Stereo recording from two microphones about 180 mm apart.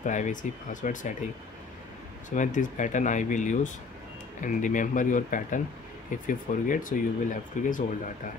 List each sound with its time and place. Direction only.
0.0 s speech: 45° left (ahead or behind)
2.2 s speech: 45° left (ahead or behind)